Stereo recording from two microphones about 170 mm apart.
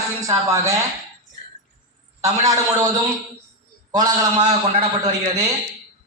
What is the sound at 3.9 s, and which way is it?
Speech, 25° right (ahead or behind).